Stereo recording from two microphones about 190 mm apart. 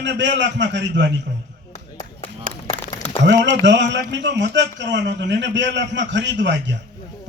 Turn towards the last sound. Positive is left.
turn(degrees=-70)  # may be behind; listen again after turning